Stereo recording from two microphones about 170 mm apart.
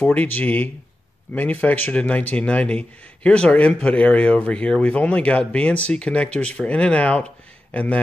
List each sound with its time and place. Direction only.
0.0 s a man's voice: 10° left (ahead or behind)